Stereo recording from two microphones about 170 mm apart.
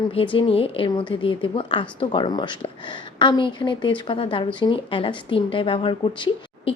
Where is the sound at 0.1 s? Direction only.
35° left (ahead or behind).